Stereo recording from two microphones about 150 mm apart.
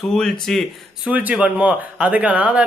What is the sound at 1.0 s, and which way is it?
Speech, 10° right (ahead or behind).